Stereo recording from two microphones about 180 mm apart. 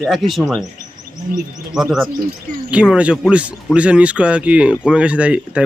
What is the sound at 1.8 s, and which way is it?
A man's voice, centre (ahead or behind).